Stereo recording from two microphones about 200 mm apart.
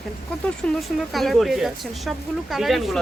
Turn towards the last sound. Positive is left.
turn(degrees=0)  # may be behind; listen again after turning